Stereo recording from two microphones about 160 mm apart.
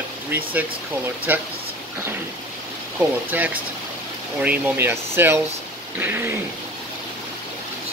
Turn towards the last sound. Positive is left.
turn(degrees=-15)  # may be behind; listen again after turning